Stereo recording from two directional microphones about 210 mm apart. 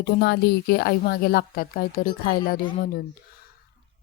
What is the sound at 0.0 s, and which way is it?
Speech, 55° left (ahead or behind).